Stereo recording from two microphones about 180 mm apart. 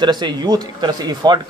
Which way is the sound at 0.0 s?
25° right (ahead or behind).